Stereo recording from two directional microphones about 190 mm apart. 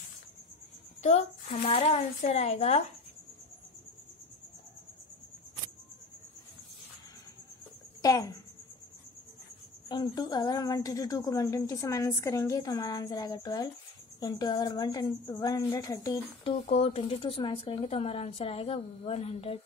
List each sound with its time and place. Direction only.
1.0 s speech: 35° left (ahead or behind)
8.0 s speech: 20° left (ahead or behind)
9.8 s a woman's voice: 20° left (ahead or behind)
16.4 s speech: 30° left (ahead or behind)